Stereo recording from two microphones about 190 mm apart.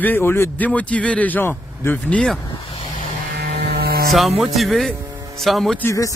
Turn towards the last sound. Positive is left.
turn(degrees=15)  # may be behind; listen again after turning